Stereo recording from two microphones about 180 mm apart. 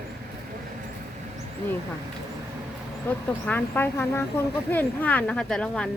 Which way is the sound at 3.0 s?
10° left (ahead or behind).